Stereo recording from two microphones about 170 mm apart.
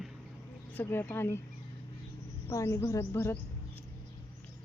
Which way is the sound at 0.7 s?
10° left (ahead or behind).